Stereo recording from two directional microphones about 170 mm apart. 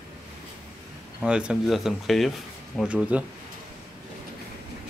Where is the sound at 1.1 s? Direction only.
5° right (ahead or behind).